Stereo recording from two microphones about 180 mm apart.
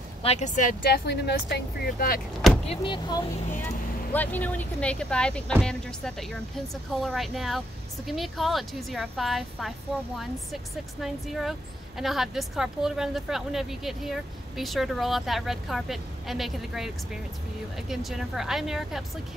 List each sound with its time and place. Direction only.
0.2 s speech: 35° left (ahead or behind)
1.0 s speech: 70° left (ahead or behind)
2.7 s speech: 25° left (ahead or behind)
4.1 s speech: 10° left (ahead or behind)